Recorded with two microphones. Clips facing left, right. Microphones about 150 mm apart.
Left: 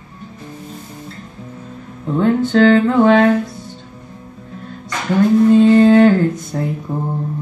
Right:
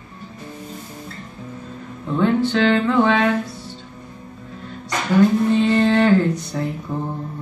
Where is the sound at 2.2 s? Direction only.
45° left (ahead or behind).